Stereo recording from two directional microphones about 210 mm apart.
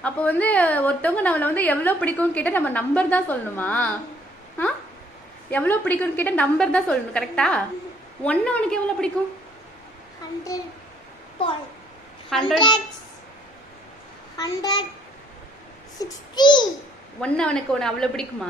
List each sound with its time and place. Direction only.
0.0 s a woman's voice: 5° left (ahead or behind)
5.5 s a woman's voice: 10° left (ahead or behind)
10.5 s a woman's voice: 15° left (ahead or behind)
12.4 s a child's voice: 20° left (ahead or behind)
14.3 s a woman's voice: 15° left (ahead or behind)
16.0 s a child's voice: 20° left (ahead or behind)
17.2 s a woman's voice: 5° left (ahead or behind)